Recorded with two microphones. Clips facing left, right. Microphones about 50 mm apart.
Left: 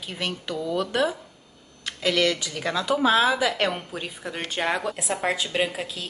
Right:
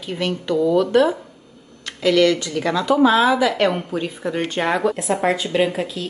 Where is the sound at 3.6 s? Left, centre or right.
Centre.